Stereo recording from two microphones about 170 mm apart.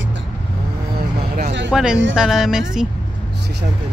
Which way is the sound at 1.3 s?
75° right (ahead or behind).